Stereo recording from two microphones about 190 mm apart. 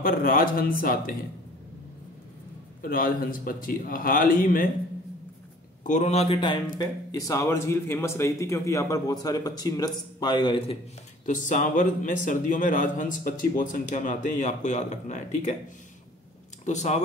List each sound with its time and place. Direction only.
0.0 s a man's voice: 50° left (ahead or behind)
2.8 s a man's voice: 50° left (ahead or behind)
5.9 s speech: 35° left (ahead or behind)
11.2 s a man's voice: 40° left (ahead or behind)
16.6 s speech: 35° left (ahead or behind)